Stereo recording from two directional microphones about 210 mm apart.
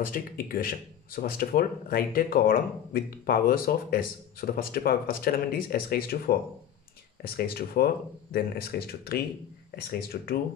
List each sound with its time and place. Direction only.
0.0 s speech: 40° left (ahead or behind)